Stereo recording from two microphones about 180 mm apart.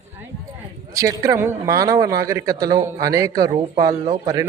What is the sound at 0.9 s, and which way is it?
A man's voice, 15° right (ahead or behind).